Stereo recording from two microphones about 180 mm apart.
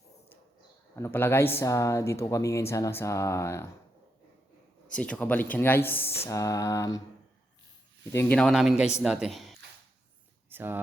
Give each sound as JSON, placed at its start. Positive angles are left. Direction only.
{"t": 0.9, "sound": "speech", "side_deg": 15}
{"t": 4.9, "sound": "speech", "side_deg": 5}
{"t": 8.1, "sound": "speech", "side_deg": 10}
{"t": 10.5, "sound": "speech", "side_deg": -10}